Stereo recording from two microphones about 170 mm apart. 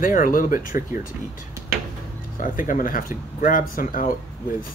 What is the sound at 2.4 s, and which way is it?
Speech, 50° left (ahead or behind).